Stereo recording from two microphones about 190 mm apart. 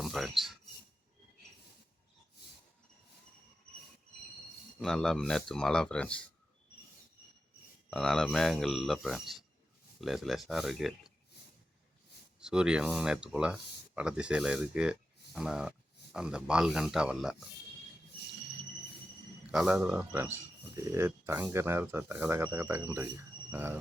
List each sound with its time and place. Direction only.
0.0 s speech: centre (ahead or behind)
4.8 s speech: 5° left (ahead or behind)
7.9 s speech: centre (ahead or behind)
12.4 s speech: 5° right (ahead or behind)
19.5 s speech: 5° right (ahead or behind)